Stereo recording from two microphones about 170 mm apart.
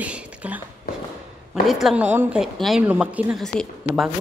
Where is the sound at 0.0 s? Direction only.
5° right (ahead or behind).